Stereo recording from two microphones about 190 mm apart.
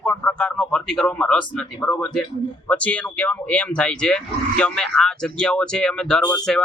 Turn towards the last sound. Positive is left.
turn(degrees=5)  # may be behind; listen again after turning